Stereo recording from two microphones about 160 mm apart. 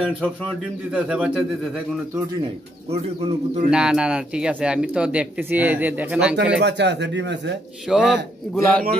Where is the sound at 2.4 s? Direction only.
40° right (ahead or behind).